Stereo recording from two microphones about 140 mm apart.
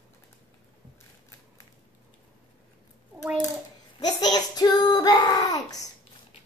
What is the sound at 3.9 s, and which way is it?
Child singing, 30° left (ahead or behind).